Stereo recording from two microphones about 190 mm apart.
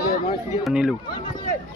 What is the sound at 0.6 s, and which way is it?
Speech, centre (ahead or behind).